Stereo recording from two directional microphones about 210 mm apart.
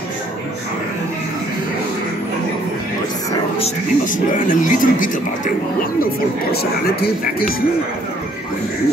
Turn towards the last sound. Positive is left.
turn(degrees=45)  # may be behind; listen again after turning